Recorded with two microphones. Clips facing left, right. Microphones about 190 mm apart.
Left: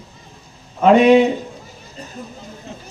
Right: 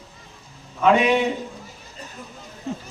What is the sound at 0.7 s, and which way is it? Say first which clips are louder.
Speech: left 6 dB; 40° left (ahead or behind).